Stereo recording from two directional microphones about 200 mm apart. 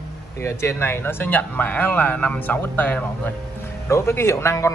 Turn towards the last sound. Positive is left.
turn(degrees=15)  # may be behind; listen again after turning